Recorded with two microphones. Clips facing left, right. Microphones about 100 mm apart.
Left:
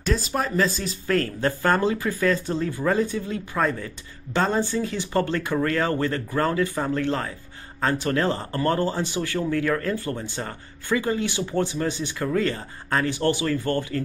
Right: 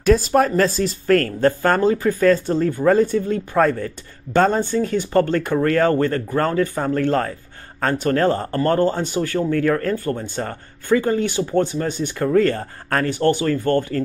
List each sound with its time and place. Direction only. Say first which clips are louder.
0.0 s speech: right 10 dB; 55° right (ahead or behind)